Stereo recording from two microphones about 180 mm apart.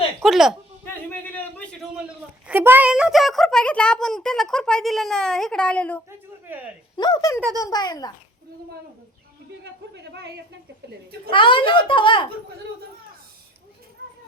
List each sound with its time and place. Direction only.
0.2 s speech: centre (ahead or behind)
0.9 s a sound: 10° left (ahead or behind)
2.5 s a child's voice: 10° right (ahead or behind); by 6.0 s 5° left (ahead or behind)
6.9 s a child's voice: 25° left (ahead or behind)
9.9 s speech: 70° right (ahead or behind)
11.3 s a child's voice: 30° left (ahead or behind)